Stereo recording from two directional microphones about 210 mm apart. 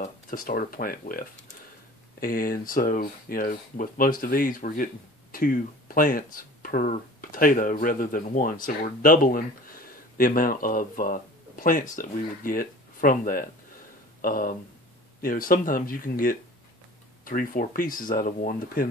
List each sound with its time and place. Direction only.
0.0 s speech: 40° left (ahead or behind)